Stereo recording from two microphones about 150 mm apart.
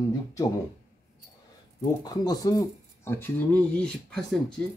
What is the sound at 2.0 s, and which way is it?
Speech, 25° left (ahead or behind).